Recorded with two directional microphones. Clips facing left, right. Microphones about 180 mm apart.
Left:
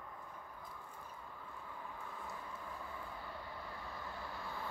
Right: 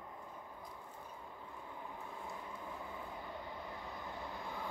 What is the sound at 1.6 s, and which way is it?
Vehicle, 20° right (ahead or behind).